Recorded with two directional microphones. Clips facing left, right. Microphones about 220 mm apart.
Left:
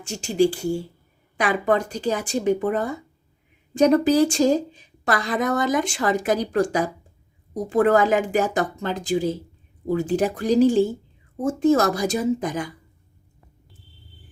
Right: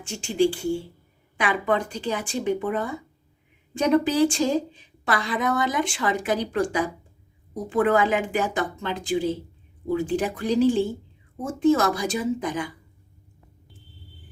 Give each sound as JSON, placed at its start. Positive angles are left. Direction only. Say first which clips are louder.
{"t": 0.0, "sound": "a woman's voice", "louder": "left 2 dB", "side_deg": 40}